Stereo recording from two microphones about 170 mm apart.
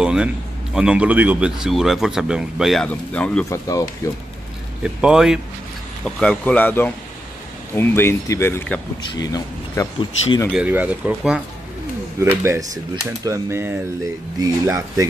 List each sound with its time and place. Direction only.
0.0 s a sound: 5° right (ahead or behind)
0.7 s speech: 5° right (ahead or behind)
3.4 s speech: 20° left (ahead or behind)
4.8 s speech: 5° right (ahead or behind)
9.1 s speech: 20° left (ahead or behind)
10.5 s speech: 10° right (ahead or behind)